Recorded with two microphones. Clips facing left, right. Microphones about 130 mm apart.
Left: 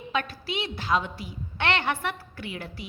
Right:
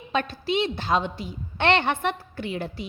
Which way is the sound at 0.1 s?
25° right (ahead or behind).